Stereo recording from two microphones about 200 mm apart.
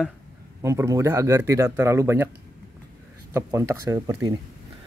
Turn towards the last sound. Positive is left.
turn(degrees=-15)  # may be behind; listen again after turning